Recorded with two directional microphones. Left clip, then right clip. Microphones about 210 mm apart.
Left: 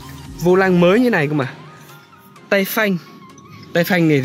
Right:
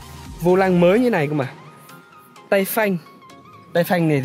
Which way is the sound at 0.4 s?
10° right (ahead or behind).